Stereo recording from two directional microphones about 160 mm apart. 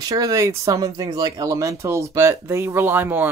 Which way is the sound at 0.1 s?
20° right (ahead or behind).